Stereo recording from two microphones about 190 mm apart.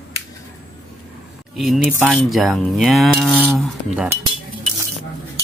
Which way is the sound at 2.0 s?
Centre (ahead or behind).